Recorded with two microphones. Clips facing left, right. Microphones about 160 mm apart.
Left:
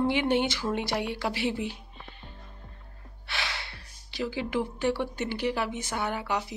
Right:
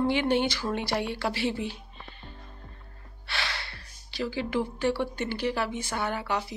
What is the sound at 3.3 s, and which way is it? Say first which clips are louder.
Speech: right 1 dB; 15° left (ahead or behind).